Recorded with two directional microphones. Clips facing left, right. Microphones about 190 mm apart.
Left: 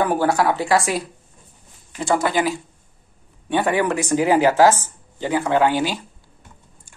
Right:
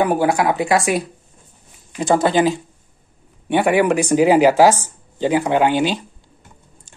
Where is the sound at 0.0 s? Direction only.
15° right (ahead or behind).